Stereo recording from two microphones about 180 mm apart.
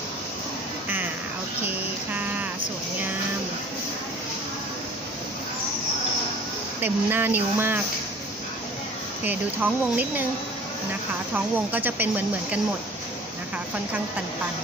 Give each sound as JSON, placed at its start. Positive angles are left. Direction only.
{"t": 0.8, "sound": "a sound", "side_deg": -10}
{"t": 6.8, "sound": "speech", "side_deg": -10}
{"t": 9.2, "sound": "speech", "side_deg": -10}
{"t": 11.3, "sound": "speech", "side_deg": -10}